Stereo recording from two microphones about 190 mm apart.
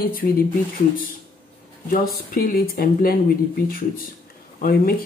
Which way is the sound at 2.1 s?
55° left (ahead or behind).